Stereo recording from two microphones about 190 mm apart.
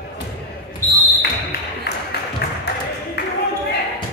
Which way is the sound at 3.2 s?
60° left (ahead or behind).